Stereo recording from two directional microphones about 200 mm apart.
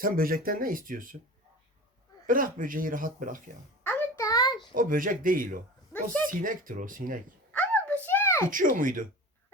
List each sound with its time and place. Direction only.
0.0 s speech: 45° right (ahead or behind)
2.2 s speech: 45° right (ahead or behind)
3.8 s a sound: 15° left (ahead or behind)
4.7 s speech: 45° right (ahead or behind)
7.5 s a sound: 5° left (ahead or behind)
8.4 s speech: 45° right (ahead or behind)